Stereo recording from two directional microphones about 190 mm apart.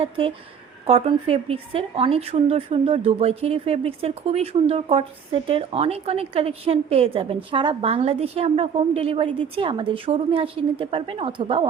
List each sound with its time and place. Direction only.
0.0 s a woman's voice: 30° right (ahead or behind)